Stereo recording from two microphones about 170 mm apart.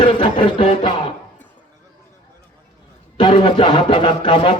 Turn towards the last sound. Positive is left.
turn(degrees=30)  # may be behind; listen again after turning